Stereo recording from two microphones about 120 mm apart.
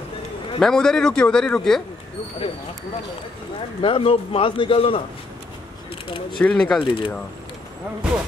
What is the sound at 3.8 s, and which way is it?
A man's voice, 50° left (ahead or behind).